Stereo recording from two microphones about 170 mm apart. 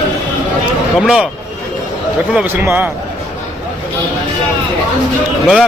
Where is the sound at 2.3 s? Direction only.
15° right (ahead or behind).